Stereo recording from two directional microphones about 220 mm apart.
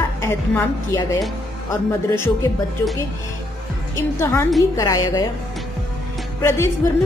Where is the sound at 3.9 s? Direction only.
10° left (ahead or behind).